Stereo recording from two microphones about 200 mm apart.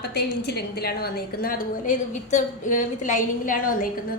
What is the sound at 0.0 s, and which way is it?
A woman's voice, 55° left (ahead or behind).